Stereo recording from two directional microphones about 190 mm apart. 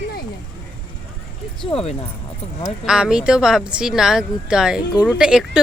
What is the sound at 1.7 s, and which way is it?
Speech, 30° left (ahead or behind).